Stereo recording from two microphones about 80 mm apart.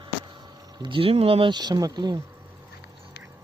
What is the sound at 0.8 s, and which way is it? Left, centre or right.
Speech, right.